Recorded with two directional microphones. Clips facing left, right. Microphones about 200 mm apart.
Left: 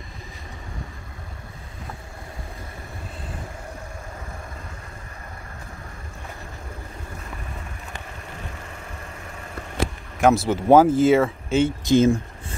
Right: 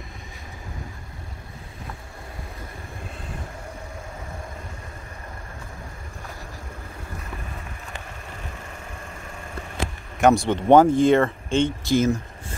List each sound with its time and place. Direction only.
10.2 s speech: centre (ahead or behind)
11.8 s speech: 20° left (ahead or behind)